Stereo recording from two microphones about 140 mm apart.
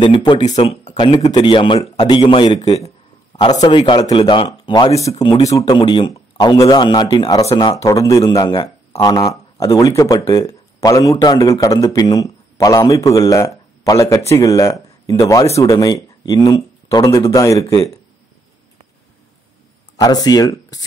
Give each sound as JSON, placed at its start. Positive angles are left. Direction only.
{"t": 0.0, "sound": "a man's voice", "side_deg": 35}
{"t": 20.0, "sound": "a man's voice", "side_deg": 30}